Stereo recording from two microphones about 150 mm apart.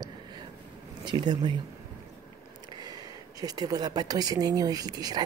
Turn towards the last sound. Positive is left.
turn(degrees=-25)  # may be behind; listen again after turning